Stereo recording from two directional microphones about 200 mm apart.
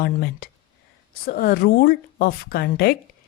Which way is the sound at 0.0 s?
50° left (ahead or behind).